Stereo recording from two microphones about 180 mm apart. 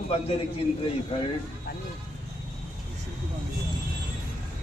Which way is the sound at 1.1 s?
30° left (ahead or behind).